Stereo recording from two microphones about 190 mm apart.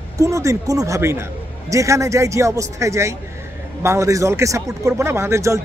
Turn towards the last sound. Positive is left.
turn(degrees=-15)  # may be behind; listen again after turning